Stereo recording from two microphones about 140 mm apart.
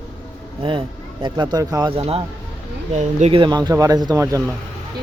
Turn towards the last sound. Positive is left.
turn(degrees=-20)  # may be behind; listen again after turning